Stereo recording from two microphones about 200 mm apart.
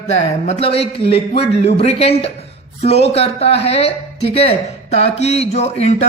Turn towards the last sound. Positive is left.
turn(degrees=35)  # may be behind; listen again after turning